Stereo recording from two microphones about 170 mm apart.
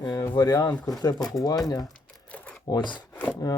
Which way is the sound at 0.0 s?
20° left (ahead or behind).